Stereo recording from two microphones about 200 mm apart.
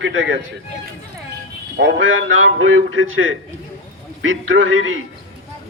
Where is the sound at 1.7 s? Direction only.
70° right (ahead or behind).